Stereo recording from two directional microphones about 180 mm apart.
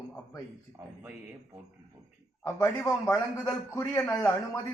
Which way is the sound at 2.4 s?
15° left (ahead or behind).